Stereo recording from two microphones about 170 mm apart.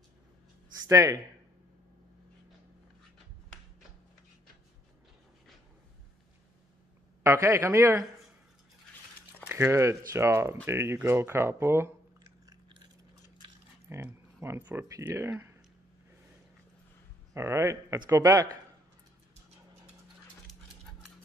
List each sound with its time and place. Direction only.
0.8 s speech: 20° right (ahead or behind)
7.2 s speech: 15° right (ahead or behind)
9.5 s speech: 15° right (ahead or behind)
12.4 s chewing: 25° right (ahead or behind)
13.4 s speech: 15° right (ahead or behind)
17.3 s speech: 15° right (ahead or behind)